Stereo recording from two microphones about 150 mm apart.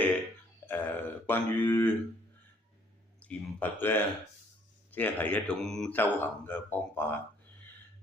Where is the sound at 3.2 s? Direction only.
10° left (ahead or behind).